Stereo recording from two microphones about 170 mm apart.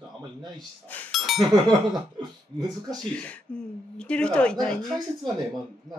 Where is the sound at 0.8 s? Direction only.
5° left (ahead or behind).